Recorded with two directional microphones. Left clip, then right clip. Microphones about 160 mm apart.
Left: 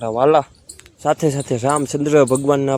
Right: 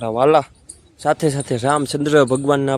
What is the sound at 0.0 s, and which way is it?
Speech, 15° right (ahead or behind).